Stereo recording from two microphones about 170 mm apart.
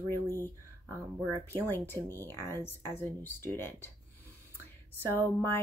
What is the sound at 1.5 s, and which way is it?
Speech, 15° left (ahead or behind).